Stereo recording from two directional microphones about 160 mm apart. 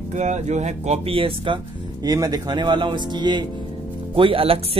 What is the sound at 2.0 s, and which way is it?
Speech, 25° right (ahead or behind).